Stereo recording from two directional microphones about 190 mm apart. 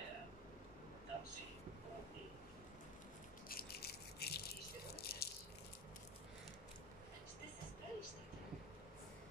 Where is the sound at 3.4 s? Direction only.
55° left (ahead or behind).